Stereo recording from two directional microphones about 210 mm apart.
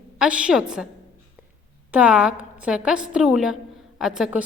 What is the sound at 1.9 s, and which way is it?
A woman's voice, 5° right (ahead or behind).